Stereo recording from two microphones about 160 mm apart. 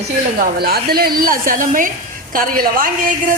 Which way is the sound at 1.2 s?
60° right (ahead or behind).